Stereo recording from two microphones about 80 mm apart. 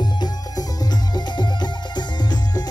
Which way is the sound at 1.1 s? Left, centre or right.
Left.